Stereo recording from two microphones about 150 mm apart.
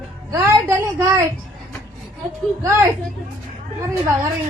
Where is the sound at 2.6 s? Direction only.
15° right (ahead or behind).